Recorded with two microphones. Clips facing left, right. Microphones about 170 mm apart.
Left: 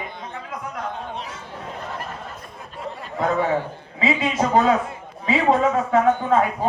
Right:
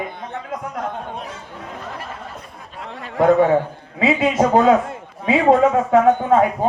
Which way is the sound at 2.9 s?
65° right (ahead or behind).